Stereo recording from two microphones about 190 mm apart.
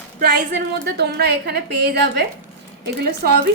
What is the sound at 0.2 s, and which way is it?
A woman's voice, 55° right (ahead or behind).